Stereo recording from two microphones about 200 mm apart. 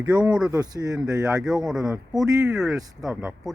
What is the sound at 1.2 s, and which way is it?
Speech, 5° right (ahead or behind).